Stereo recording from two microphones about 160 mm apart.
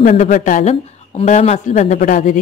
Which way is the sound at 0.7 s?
40° left (ahead or behind).